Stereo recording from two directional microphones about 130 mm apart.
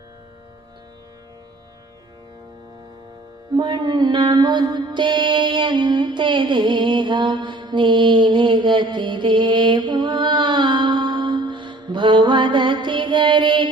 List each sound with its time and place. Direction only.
3.5 s mantra: 35° right (ahead or behind)